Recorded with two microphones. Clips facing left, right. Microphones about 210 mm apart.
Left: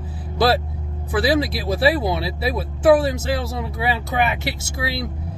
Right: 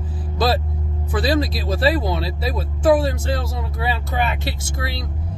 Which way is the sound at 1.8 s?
10° left (ahead or behind).